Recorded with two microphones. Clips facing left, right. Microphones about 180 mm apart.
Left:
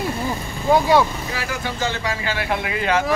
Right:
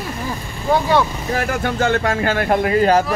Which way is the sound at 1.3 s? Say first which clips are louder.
Right 7 dB; 50° right (ahead or behind).